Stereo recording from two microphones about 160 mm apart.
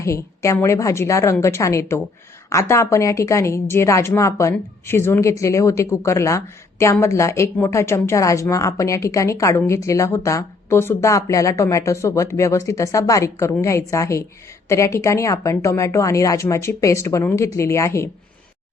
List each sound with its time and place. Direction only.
0.0 s a woman's voice: 20° left (ahead or behind)